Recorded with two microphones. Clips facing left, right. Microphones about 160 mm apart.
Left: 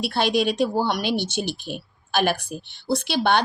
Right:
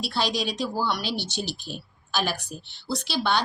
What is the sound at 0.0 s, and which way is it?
Speech, 55° left (ahead or behind).